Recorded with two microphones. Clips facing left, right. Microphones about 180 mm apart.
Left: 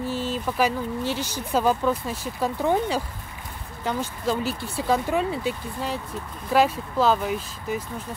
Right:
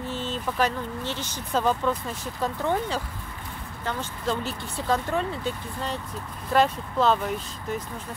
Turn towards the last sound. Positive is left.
turn(degrees=5)  # may be behind; listen again after turning